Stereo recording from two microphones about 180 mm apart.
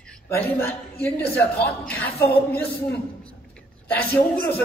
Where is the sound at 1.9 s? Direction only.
60° left (ahead or behind).